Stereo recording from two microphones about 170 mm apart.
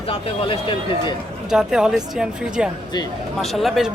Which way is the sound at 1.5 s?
5° right (ahead or behind).